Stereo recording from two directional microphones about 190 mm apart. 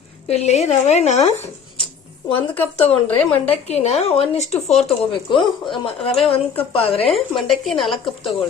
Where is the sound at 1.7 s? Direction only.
25° left (ahead or behind).